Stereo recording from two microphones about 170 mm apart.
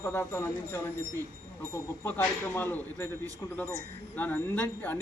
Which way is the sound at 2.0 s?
15° left (ahead or behind).